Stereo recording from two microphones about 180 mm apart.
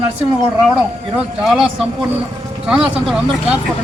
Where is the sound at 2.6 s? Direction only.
5° right (ahead or behind).